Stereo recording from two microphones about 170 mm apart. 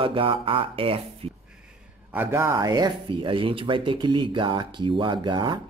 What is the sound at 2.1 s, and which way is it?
Speech, 15° right (ahead or behind).